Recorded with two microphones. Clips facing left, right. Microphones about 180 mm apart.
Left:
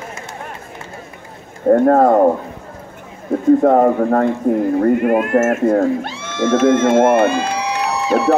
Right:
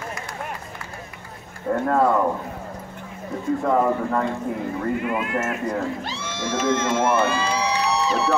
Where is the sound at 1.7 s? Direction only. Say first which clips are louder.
Left 9 dB; 45° left (ahead or behind).